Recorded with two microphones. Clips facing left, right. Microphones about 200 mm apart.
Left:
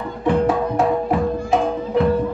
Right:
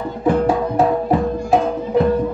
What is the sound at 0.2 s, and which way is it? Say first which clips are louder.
Music: right 1 dB; 30° right (ahead or behind).